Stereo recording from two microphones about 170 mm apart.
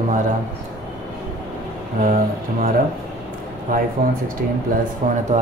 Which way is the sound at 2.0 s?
50° right (ahead or behind).